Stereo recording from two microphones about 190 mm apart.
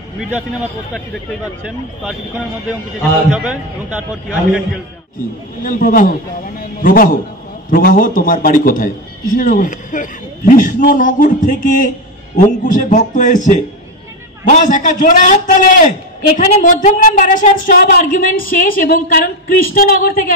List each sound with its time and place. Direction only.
3.3 s a man's voice: 5° right (ahead or behind)
5.6 s a man's voice: 45° left (ahead or behind)